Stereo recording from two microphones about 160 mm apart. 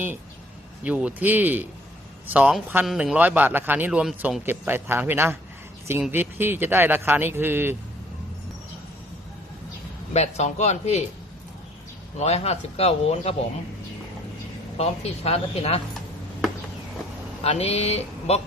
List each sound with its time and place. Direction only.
0.9 s speech: 10° right (ahead or behind)
10.1 s a man's voice: 45° left (ahead or behind)
12.1 s speech: 45° left (ahead or behind)
14.8 s speech: 40° left (ahead or behind)
17.4 s speech: 40° left (ahead or behind)